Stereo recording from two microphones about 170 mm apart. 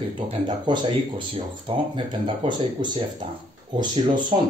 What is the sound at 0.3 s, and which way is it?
Speech, 30° right (ahead or behind).